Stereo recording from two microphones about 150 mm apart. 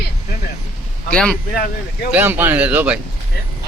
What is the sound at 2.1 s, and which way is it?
Speech, 15° right (ahead or behind).